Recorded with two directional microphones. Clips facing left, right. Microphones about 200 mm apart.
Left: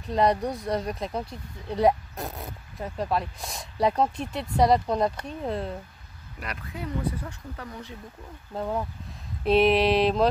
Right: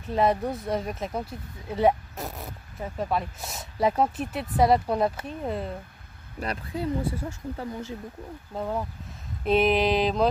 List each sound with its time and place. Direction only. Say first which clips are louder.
0.0 s speech: even; 5° right (ahead or behind)
6.4 s speech: right 6 dB; 30° right (ahead or behind)
8.5 s speech: left 1 dB; centre (ahead or behind)